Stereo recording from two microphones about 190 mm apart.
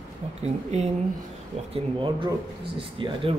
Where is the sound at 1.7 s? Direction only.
25° right (ahead or behind).